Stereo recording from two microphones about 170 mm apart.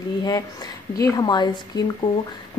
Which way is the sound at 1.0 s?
25° left (ahead or behind).